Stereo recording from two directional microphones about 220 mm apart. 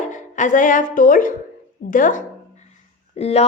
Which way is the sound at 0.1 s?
35° left (ahead or behind).